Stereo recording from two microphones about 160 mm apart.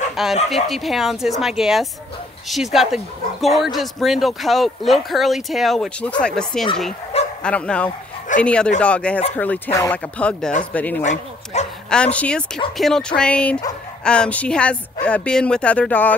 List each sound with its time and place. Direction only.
0.1 s speech: centre (ahead or behind)
11.0 s speech: 45° left (ahead or behind)
11.9 s speech: 5° left (ahead or behind)